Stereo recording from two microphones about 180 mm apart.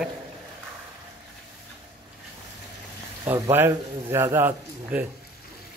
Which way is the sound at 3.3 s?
10° right (ahead or behind).